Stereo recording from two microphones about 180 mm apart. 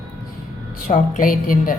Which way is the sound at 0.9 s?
50° left (ahead or behind).